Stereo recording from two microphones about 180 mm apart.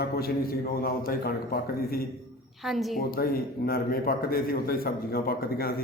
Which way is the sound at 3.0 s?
55° left (ahead or behind).